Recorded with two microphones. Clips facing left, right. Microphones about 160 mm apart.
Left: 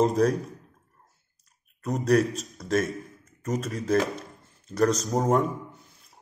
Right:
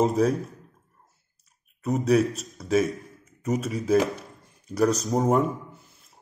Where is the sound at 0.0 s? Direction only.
5° right (ahead or behind).